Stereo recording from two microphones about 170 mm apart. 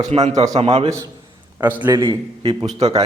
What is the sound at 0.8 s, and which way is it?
A man's voice, 20° right (ahead or behind).